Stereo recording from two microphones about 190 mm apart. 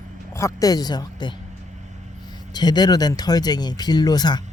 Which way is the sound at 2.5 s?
20° left (ahead or behind).